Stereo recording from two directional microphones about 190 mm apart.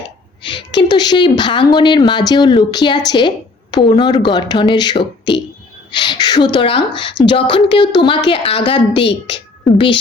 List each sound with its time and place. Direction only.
0.4 s a woman's voice: 25° left (ahead or behind)